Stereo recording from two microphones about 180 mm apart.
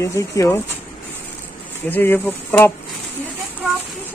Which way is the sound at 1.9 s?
10° left (ahead or behind).